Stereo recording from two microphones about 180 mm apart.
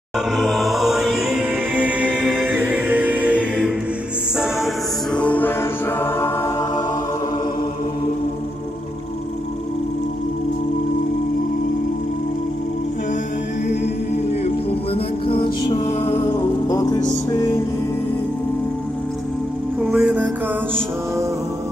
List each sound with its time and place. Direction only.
0.4 s music: centre (ahead or behind)
5.1 s music: 10° left (ahead or behind)
15.2 s music: 30° left (ahead or behind)
19.8 s music: 5° right (ahead or behind)